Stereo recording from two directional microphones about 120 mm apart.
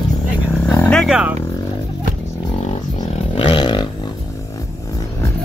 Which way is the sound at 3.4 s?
40° left (ahead or behind).